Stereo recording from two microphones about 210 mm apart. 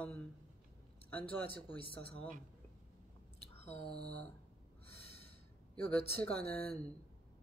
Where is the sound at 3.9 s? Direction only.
50° right (ahead or behind).